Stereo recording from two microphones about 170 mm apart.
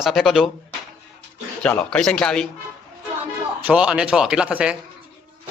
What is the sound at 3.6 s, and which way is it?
Speech, 5° right (ahead or behind).